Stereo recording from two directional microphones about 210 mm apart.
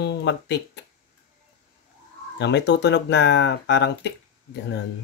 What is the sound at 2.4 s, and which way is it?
Speech, 55° left (ahead or behind).